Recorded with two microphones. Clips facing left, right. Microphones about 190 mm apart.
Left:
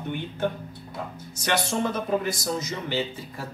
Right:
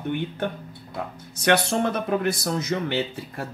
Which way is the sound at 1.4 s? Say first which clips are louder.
Right 5 dB; 60° right (ahead or behind).